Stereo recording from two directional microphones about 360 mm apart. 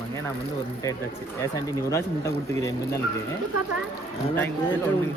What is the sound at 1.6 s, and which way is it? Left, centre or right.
Speech, centre.